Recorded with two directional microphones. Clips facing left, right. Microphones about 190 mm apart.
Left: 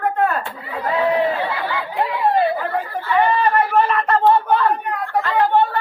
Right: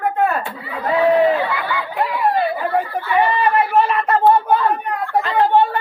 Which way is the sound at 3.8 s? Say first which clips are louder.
Right 1 dB; 10° right (ahead or behind).